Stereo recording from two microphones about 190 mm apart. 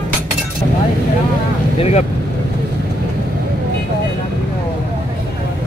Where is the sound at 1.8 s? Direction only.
35° left (ahead or behind).